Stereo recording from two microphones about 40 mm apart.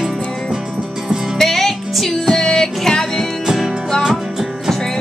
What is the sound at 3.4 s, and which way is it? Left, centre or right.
Music, centre.